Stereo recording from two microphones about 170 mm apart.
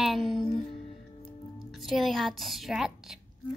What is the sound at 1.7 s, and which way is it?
A woman's voice, centre (ahead or behind).